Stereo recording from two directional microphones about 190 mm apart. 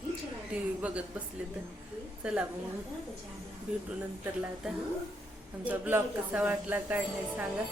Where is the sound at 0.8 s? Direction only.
5° right (ahead or behind).